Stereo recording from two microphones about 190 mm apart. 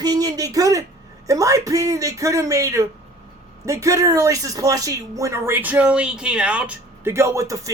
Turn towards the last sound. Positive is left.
turn(degrees=-15)  # may be behind; listen again after turning